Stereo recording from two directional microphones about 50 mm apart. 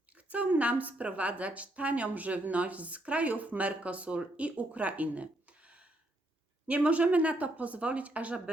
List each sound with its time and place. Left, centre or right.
0.2 s a woman's voice: right